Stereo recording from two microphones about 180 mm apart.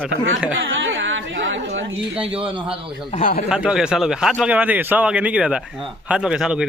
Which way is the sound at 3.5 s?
5° right (ahead or behind).